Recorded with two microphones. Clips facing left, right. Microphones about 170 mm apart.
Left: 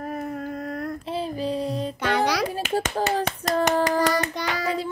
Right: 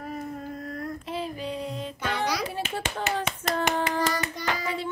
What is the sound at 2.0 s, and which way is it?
Music, 75° left (ahead or behind).